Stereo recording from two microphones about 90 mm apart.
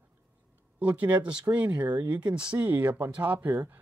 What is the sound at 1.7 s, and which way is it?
Speech, 50° right (ahead or behind).